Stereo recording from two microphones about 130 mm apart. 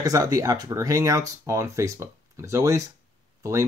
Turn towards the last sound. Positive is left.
turn(degrees=-25)  # may be behind; listen again after turning